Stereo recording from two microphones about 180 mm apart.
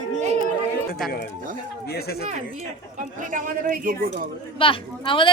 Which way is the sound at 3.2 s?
45° right (ahead or behind).